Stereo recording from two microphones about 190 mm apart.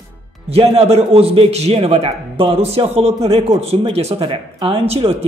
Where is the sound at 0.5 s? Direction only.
30° right (ahead or behind).